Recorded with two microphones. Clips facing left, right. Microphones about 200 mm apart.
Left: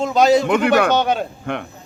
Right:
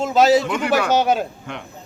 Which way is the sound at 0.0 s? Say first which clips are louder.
Left 1 dB; 5° right (ahead or behind).